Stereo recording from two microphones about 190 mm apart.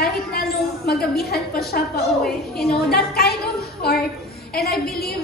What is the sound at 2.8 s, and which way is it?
Speech, 55° left (ahead or behind).